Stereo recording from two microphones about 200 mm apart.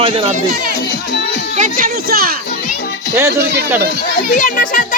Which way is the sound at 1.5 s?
40° right (ahead or behind).